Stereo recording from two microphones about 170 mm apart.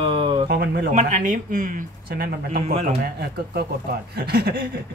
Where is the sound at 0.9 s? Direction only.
45° right (ahead or behind); by 4.6 s 65° right (ahead or behind).